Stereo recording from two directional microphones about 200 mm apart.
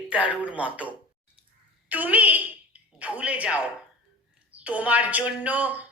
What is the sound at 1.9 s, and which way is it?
Speech, 10° right (ahead or behind).